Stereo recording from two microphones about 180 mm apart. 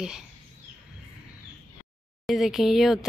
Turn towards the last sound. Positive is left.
turn(degrees=0)  # may be behind; listen again after turning